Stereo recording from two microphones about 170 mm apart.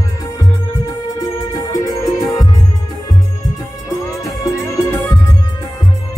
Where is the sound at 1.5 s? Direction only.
20° left (ahead or behind).